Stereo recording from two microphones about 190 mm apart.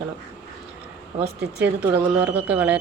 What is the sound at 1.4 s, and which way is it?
Speech, 60° right (ahead or behind).